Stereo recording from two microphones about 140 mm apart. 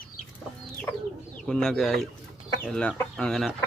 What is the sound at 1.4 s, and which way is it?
Speech, 5° left (ahead or behind).